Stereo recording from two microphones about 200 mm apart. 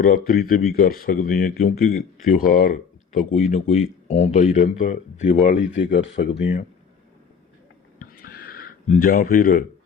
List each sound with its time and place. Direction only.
0.0 s speech: 45° left (ahead or behind)
5.4 s speech: 60° left (ahead or behind)
7.9 s a sound: 50° left (ahead or behind)